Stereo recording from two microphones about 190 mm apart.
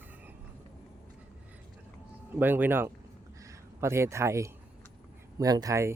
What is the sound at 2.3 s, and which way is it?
A man's voice, 10° right (ahead or behind).